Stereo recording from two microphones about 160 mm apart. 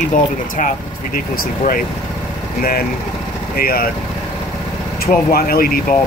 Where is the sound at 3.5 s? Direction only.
65° left (ahead or behind).